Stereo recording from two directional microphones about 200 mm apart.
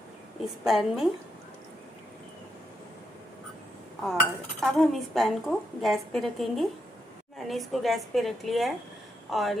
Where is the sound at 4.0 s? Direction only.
Centre (ahead or behind).